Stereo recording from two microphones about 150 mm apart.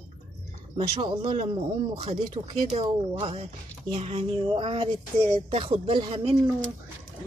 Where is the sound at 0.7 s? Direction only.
35° right (ahead or behind).